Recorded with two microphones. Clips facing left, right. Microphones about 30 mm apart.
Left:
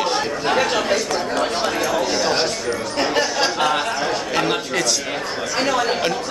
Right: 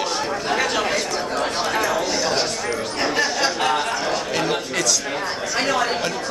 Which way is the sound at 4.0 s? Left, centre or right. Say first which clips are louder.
Left 2 dB; centre.